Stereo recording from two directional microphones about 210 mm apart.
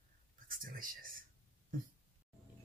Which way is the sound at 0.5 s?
40° right (ahead or behind).